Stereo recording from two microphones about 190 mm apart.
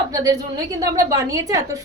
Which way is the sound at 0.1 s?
20° right (ahead or behind).